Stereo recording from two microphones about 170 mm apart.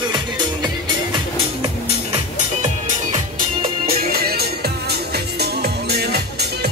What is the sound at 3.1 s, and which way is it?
Music, 45° right (ahead or behind).